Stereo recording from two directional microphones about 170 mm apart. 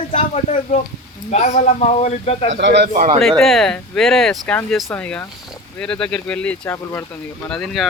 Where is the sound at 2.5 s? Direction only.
85° right.